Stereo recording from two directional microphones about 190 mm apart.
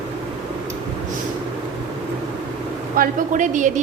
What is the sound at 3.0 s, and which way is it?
Speech, 40° right (ahead or behind).